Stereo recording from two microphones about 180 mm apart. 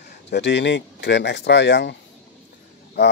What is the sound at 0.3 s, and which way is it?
Speech, 75° left (ahead or behind).